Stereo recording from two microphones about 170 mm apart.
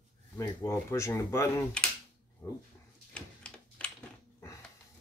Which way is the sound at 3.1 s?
5° left (ahead or behind).